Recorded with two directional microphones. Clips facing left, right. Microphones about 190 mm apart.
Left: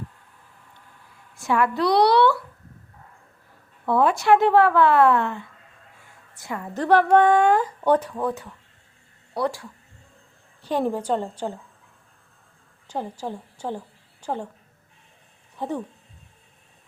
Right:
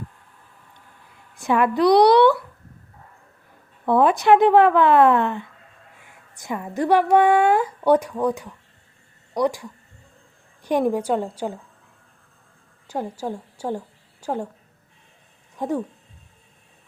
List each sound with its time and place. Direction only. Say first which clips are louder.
1.4 s speech: right 3 dB; 20° right (ahead or behind)
3.8 s speech: right 3 dB; 20° right (ahead or behind)
12.9 s a woman's voice: right 3 dB; 10° right (ahead or behind)
15.5 s speech: right 4 dB; 10° right (ahead or behind)